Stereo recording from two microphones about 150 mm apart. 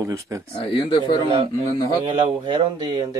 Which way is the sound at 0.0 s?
20° right (ahead or behind).